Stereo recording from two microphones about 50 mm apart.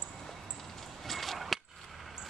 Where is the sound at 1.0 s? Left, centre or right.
Centre.